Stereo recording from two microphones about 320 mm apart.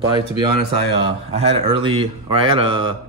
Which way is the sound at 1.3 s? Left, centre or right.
Centre.